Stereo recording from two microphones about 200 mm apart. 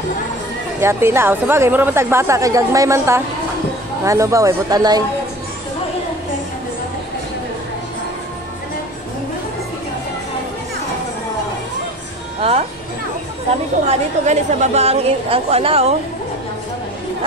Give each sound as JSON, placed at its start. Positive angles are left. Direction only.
{"t": 0.7, "sound": "a woman's voice", "side_deg": -10}
{"t": 12.4, "sound": "speech", "side_deg": -30}
{"t": 13.8, "sound": "a woman's voice", "side_deg": -35}